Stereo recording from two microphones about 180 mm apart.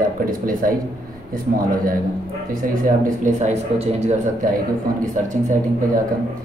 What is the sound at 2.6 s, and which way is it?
Speech, 50° right (ahead or behind).